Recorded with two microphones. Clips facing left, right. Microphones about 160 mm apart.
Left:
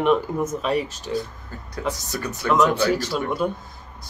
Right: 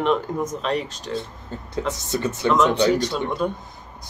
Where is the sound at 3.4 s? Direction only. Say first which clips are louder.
Even; 5° left (ahead or behind).